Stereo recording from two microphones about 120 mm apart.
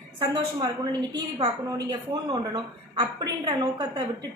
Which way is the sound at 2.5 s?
35° right (ahead or behind).